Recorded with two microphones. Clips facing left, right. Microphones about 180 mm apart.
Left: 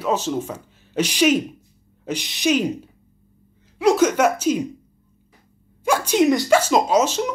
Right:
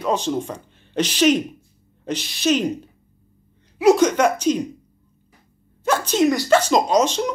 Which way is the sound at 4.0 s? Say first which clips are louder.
Even; 5° left (ahead or behind).